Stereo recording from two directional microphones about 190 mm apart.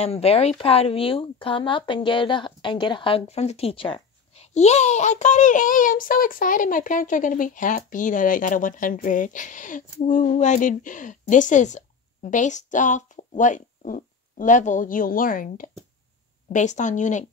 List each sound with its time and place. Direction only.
0.0 s speech: 30° left (ahead or behind)